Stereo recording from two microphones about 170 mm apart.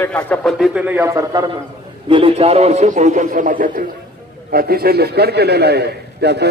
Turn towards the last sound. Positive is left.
turn(degrees=-75)  # may be behind; listen again after turning